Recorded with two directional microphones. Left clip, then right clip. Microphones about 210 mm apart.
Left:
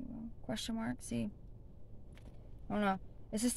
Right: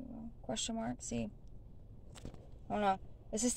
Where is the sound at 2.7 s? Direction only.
15° left (ahead or behind).